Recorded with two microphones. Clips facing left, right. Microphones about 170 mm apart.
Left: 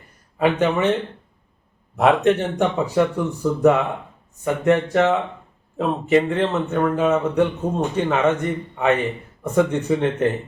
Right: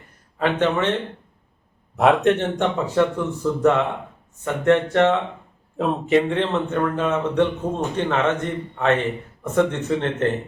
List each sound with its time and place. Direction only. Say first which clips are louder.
0.3 s speech: left 2 dB; 10° left (ahead or behind)
2.0 s speech: even; centre (ahead or behind)